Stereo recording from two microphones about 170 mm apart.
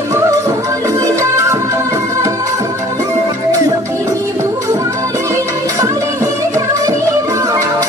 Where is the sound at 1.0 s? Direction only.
15° right (ahead or behind).